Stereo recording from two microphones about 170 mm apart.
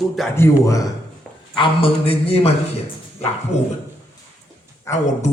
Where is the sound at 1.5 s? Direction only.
30° left (ahead or behind).